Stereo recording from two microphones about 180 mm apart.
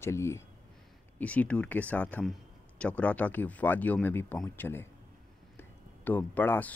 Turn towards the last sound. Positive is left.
turn(degrees=10)  # may be behind; listen again after turning